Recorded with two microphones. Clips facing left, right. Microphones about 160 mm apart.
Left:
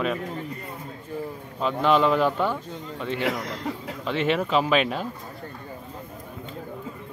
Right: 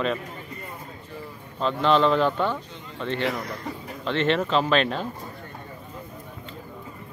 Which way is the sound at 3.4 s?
90° left.